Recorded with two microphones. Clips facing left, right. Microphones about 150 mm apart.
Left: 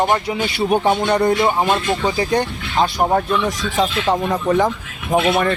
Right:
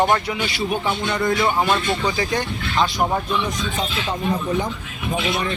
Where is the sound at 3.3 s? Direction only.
90° left.